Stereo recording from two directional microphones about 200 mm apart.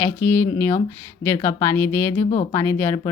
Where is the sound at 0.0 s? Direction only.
10° left (ahead or behind).